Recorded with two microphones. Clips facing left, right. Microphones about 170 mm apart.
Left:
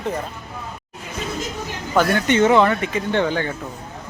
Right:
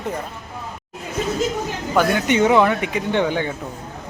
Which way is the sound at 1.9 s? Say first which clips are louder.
Even; 10° right (ahead or behind).